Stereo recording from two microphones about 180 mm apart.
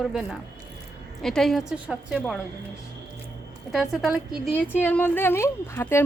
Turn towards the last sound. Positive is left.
turn(degrees=15)  # may be behind; listen again after turning